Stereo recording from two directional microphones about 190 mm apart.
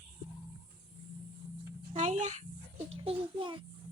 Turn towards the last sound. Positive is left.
turn(degrees=-25)  # may be behind; listen again after turning